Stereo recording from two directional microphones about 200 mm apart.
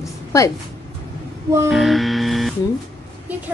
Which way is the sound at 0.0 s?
15° left (ahead or behind).